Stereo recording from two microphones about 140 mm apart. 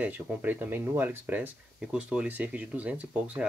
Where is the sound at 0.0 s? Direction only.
10° right (ahead or behind).